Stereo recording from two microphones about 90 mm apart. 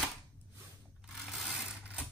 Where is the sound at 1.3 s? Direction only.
Centre (ahead or behind).